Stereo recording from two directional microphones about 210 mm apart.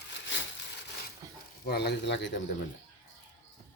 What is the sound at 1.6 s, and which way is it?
Speech, 50° left (ahead or behind).